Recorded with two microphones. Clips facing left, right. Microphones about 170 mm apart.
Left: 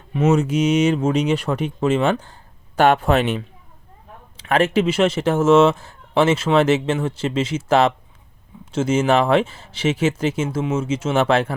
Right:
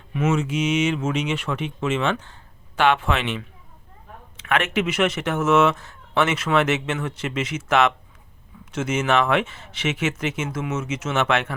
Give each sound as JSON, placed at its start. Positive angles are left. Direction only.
{"t": 0.1, "sound": "speech", "side_deg": 40}